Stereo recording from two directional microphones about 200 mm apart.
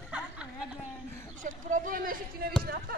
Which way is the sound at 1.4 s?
40° right (ahead or behind).